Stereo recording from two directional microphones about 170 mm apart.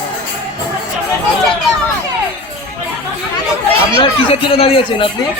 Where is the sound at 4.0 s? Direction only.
35° left (ahead or behind).